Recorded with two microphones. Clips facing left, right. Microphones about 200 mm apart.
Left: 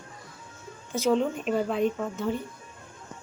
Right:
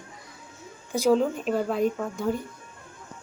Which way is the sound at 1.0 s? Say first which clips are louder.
Right 2 dB; centre (ahead or behind).